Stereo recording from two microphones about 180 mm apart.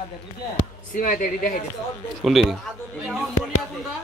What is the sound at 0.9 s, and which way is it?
Speech, 50° left (ahead or behind).